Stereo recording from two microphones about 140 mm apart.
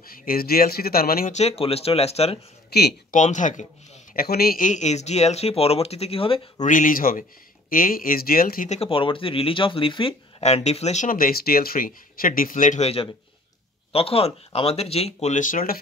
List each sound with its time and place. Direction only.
0.0 s speech: 90° left
1.3 s speech: 45° left (ahead or behind)
3.1 s speech: 60° left (ahead or behind)
4.1 s speech: 90° left; by 6.5 s 40° left (ahead or behind)
6.6 s speech: 70° left (ahead or behind); by 8.6 s 90° left
8.6 s speech: 45° left (ahead or behind)
10.4 s speech: 50° left (ahead or behind)
11.1 s speech: 90° left